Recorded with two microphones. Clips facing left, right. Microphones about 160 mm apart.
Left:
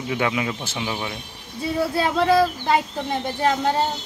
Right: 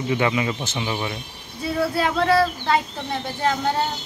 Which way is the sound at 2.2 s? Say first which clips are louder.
Left 2 dB; 15° left (ahead or behind).